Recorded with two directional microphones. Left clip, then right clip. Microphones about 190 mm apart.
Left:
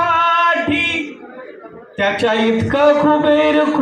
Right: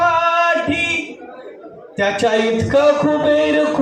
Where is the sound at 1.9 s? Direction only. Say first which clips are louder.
Even; 45° right (ahead or behind).